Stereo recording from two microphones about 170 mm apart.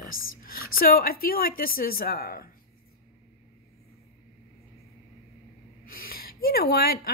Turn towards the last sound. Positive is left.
turn(degrees=60)  # may be behind; listen again after turning